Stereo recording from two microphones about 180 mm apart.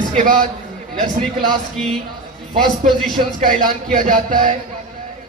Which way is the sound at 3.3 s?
45° right (ahead or behind).